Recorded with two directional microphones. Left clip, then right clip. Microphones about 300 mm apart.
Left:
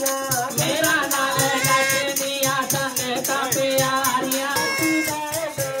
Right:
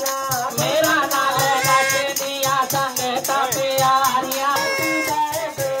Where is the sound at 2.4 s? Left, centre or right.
Right.